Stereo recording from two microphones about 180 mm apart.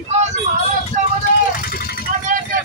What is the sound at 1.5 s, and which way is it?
Vehicle, 55° left (ahead or behind).